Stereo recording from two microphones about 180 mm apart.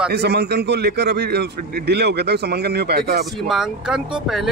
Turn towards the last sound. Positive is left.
turn(degrees=-5)  # may be behind; listen again after turning